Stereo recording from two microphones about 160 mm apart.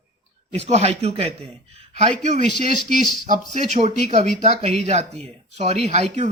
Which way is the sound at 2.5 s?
70° left (ahead or behind).